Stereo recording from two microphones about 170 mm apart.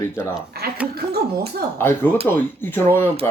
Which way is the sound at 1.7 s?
15° left (ahead or behind).